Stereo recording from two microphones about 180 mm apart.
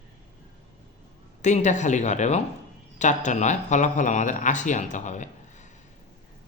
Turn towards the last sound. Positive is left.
turn(degrees=40)  # may be behind; listen again after turning